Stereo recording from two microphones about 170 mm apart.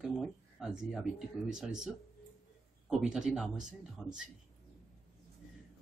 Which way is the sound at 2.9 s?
5° right (ahead or behind).